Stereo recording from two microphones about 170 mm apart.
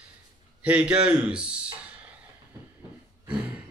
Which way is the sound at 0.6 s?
5° right (ahead or behind).